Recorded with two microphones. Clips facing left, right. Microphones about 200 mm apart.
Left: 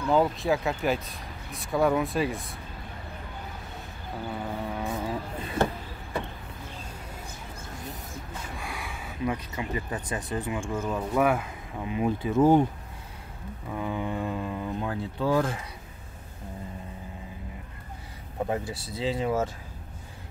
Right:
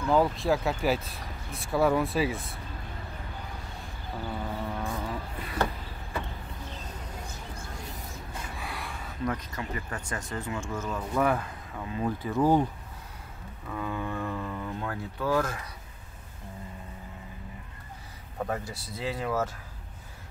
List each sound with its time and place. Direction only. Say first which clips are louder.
0.1 s speech: left 1 dB; centre (ahead or behind)
4.7 s vehicle: left 3 dB; 10° left (ahead or behind)
5.4 s a sound: left 3 dB; 25° left (ahead or behind)
8.5 s a sound: left 1 dB; centre (ahead or behind); by 10.2 s 20° left (ahead or behind)
10.3 s speech: left 4 dB; 15° left (ahead or behind)
13.7 s speech: left 2 dB; 20° left (ahead or behind)
18.5 s speech: left 3 dB; 25° left (ahead or behind)